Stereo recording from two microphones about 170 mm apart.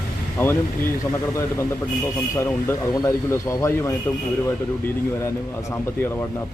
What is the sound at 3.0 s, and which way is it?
Speech, 15° left (ahead or behind).